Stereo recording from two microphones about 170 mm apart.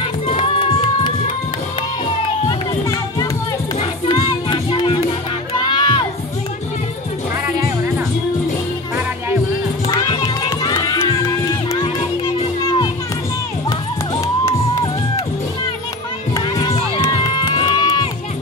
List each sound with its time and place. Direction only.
0.0 s music: 35° left (ahead or behind)
2.2 s crowd: 35° left (ahead or behind)
4.1 s music: 25° left (ahead or behind)
5.6 s crowd: 25° left (ahead or behind)
9.8 s run: 25° left (ahead or behind)
11.8 s music: 30° left (ahead or behind)
14.2 s music: 20° left (ahead or behind)
16.6 s run: 30° left (ahead or behind)